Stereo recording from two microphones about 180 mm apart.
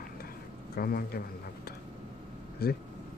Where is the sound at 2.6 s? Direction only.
60° left (ahead or behind).